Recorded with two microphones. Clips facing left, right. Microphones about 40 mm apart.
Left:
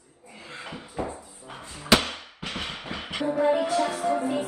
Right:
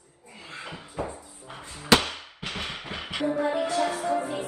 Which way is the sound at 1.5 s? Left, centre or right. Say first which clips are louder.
Left 1 dB; right.